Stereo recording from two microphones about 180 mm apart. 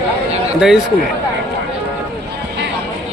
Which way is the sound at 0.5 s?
Centre (ahead or behind).